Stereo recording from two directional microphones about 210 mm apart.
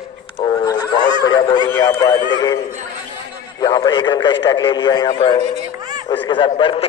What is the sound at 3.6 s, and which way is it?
A man's voice, 20° left (ahead or behind).